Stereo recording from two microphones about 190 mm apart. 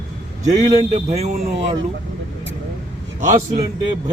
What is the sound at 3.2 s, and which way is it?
Speech, 40° right (ahead or behind).